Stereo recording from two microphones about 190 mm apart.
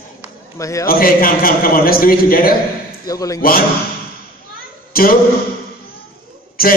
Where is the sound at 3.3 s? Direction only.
50° left (ahead or behind).